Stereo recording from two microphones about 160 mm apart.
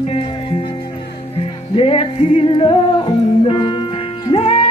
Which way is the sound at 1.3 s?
35° left (ahead or behind).